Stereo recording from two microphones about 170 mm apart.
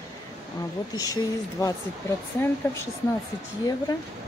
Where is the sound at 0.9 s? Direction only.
20° left (ahead or behind).